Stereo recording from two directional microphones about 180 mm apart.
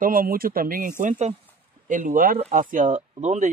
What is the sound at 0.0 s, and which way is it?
Speech, 50° right (ahead or behind).